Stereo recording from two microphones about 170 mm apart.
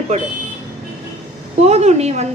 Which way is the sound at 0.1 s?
40° right (ahead or behind).